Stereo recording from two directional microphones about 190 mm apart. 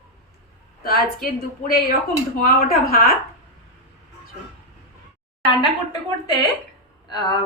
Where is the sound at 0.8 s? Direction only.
55° left (ahead or behind).